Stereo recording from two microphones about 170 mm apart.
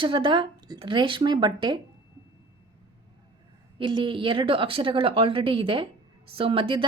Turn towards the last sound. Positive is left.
turn(degrees=-30)  # may be behind; listen again after turning